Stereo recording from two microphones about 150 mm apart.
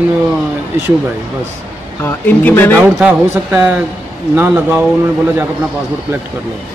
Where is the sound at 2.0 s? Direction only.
15° left (ahead or behind).